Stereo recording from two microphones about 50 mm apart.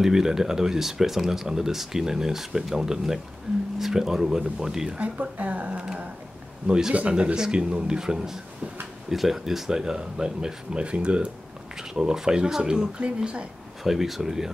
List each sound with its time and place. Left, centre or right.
0.0 s speech: centre
4.9 s speech: right
6.9 s speech: right
13.8 s speech: centre